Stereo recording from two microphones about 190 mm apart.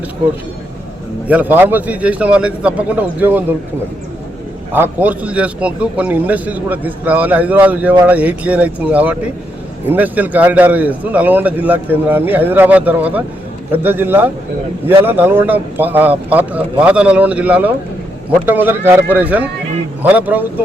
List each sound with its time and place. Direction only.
1.3 s a man's voice: 10° right (ahead or behind)
4.7 s a man's voice: 10° right (ahead or behind)